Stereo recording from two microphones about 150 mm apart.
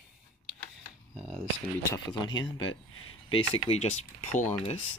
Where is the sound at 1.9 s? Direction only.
25° left (ahead or behind).